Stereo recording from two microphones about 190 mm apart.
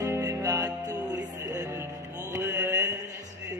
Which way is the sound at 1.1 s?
20° right (ahead or behind).